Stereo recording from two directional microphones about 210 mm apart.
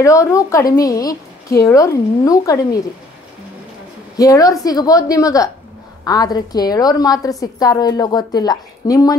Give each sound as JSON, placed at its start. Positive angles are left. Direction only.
{"t": 0.0, "sound": "a woman's voice", "side_deg": 15}
{"t": 4.2, "sound": "a woman's voice", "side_deg": 15}